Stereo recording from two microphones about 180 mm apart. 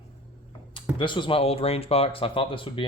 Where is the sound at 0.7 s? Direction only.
25° left (ahead or behind).